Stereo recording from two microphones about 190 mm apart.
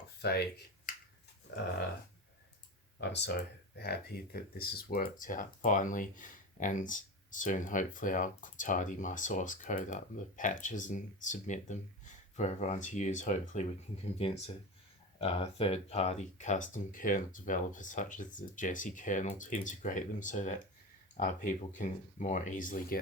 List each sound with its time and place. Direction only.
0.2 s speech: 55° left (ahead or behind)
3.0 s speech: 65° left (ahead or behind); by 23.0 s 45° left (ahead or behind)